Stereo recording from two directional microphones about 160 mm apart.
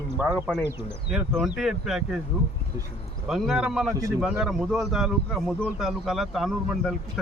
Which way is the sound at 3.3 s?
Centre (ahead or behind).